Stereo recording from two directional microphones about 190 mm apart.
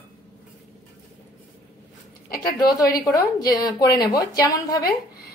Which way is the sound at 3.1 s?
20° left (ahead or behind).